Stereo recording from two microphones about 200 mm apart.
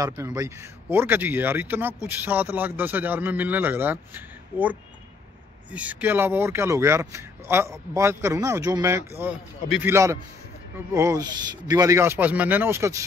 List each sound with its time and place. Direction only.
0.0 s speech: 15° right (ahead or behind)